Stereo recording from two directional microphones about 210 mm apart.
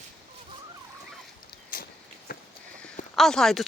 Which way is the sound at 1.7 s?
45° left (ahead or behind).